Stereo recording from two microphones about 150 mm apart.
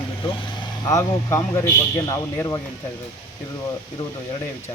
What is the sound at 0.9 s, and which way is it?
A man's voice, 20° left (ahead or behind).